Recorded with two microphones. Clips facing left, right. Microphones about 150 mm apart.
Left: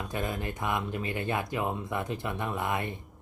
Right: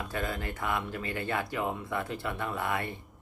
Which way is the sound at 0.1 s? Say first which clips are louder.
Left 3 dB; 20° left (ahead or behind).